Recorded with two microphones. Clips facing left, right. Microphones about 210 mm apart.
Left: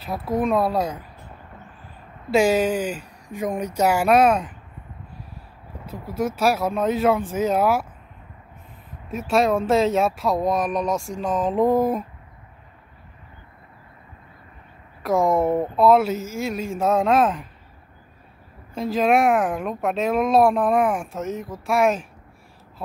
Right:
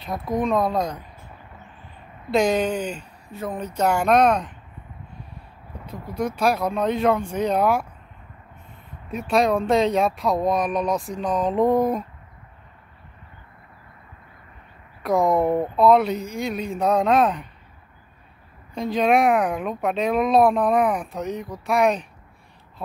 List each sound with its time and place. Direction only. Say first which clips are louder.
0.0 s speech: left 1 dB; centre (ahead or behind)
2.3 s speech: left 2 dB; 5° left (ahead or behind)
5.9 s speech: left 1 dB; 5° left (ahead or behind)
9.1 s speech: even; centre (ahead or behind)
15.0 s speech: even; centre (ahead or behind)
18.8 s speech: even; centre (ahead or behind)